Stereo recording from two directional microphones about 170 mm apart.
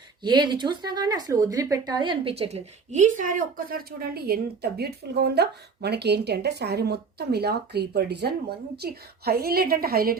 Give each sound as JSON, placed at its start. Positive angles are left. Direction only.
{"t": 0.2, "sound": "speech", "side_deg": -25}